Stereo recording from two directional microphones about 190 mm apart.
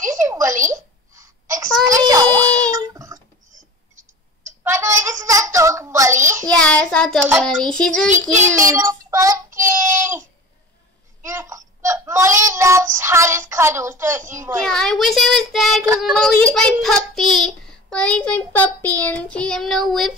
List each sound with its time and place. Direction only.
0.0 s a sound: 15° right (ahead or behind)
4.6 s a sound: 15° right (ahead or behind)
6.2 s child singing: 15° right (ahead or behind)
6.5 s child singing: 5° left (ahead or behind)
7.3 s a child's voice: 5° left (ahead or behind)
8.1 s child singing: 40° right (ahead or behind)
8.6 s child singing: 15° right (ahead or behind)
11.2 s child singing: 15° right (ahead or behind)
14.6 s a child's voice: centre (ahead or behind)